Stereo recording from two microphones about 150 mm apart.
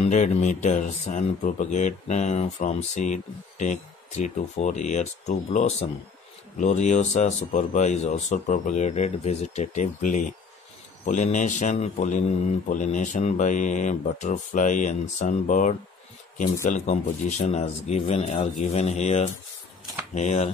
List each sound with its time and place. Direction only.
0.0 s speech: 50° left (ahead or behind)